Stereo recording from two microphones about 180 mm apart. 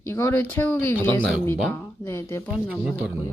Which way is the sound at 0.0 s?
15° left (ahead or behind).